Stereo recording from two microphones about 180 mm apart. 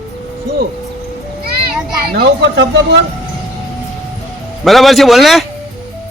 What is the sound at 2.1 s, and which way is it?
Speech, 65° right (ahead or behind).